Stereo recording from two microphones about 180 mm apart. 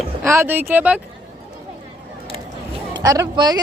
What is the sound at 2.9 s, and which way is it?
Speech, 20° right (ahead or behind).